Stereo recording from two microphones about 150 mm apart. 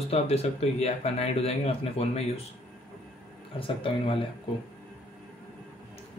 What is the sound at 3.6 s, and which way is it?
Speech, 35° left (ahead or behind).